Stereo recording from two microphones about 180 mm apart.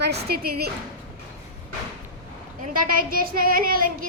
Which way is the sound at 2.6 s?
50° right (ahead or behind).